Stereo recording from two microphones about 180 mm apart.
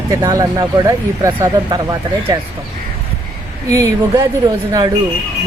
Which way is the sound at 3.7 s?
20° right (ahead or behind).